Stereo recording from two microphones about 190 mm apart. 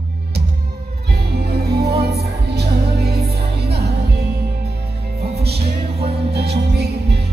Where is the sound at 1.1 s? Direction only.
55° right (ahead or behind).